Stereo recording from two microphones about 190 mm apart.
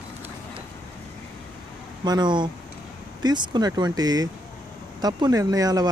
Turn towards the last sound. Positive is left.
turn(degrees=-20)  # may be behind; listen again after turning